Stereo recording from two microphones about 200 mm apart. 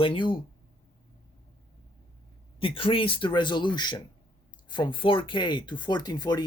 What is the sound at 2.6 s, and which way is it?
Speech, 25° left (ahead or behind).